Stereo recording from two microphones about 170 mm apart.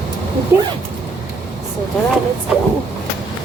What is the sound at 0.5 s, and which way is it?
Speech, 10° right (ahead or behind).